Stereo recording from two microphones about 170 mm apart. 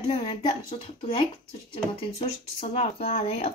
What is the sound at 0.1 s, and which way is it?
A woman's voice, 30° left (ahead or behind).